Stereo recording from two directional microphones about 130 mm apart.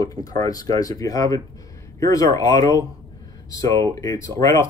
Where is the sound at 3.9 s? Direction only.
25° left (ahead or behind).